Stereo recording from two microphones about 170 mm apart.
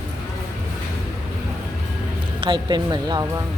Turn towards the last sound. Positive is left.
turn(degrees=-25)  # may be behind; listen again after turning